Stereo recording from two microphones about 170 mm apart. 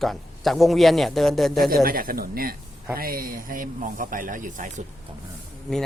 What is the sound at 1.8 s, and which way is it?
Speech, 60° right (ahead or behind).